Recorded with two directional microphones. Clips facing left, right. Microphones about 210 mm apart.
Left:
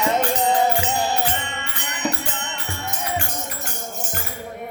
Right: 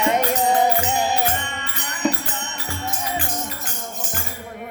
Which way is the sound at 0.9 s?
15° right (ahead or behind).